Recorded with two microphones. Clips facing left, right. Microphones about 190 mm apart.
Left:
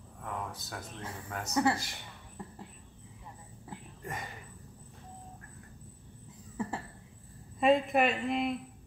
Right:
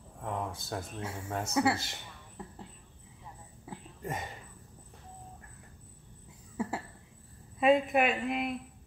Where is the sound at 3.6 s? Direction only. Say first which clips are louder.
Right 4 dB; 20° right (ahead or behind).